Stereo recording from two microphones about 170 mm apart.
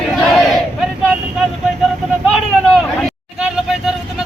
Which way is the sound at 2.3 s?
5° right (ahead or behind).